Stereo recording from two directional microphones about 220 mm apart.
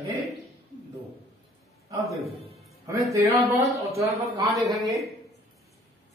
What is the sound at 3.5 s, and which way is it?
Speech, 15° right (ahead or behind).